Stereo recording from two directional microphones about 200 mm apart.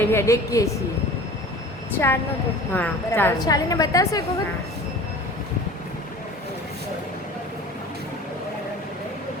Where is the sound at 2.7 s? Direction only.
10° left (ahead or behind).